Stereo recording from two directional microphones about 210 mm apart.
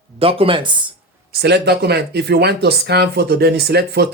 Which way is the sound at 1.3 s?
50° right (ahead or behind).